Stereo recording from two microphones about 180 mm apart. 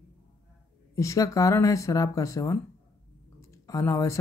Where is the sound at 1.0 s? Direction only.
15° left (ahead or behind).